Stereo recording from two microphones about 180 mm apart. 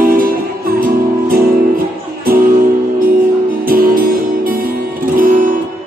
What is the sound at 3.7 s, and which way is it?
Music, 55° right (ahead or behind).